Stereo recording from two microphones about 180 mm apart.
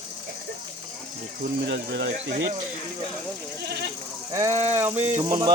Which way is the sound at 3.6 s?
65° right (ahead or behind).